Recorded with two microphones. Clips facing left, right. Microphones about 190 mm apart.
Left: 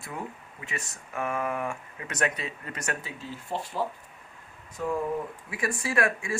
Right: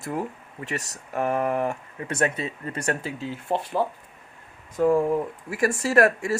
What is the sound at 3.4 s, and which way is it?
Speech, 55° right (ahead or behind).